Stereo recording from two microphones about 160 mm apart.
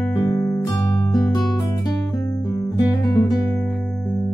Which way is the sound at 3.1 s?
20° left (ahead or behind).